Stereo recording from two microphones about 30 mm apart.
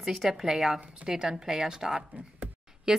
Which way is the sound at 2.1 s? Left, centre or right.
Right.